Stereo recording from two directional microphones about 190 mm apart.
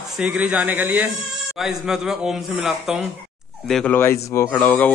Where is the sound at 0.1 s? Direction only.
5° right (ahead or behind).